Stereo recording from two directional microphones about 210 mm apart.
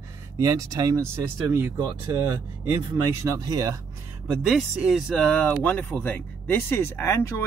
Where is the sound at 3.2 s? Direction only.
15° right (ahead or behind).